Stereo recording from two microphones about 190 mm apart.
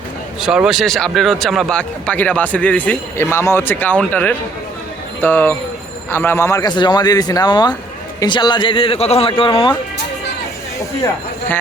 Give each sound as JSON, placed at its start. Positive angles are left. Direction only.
{"t": 0.4, "sound": "a man's voice", "side_deg": -5}
{"t": 10.8, "sound": "speech", "side_deg": 15}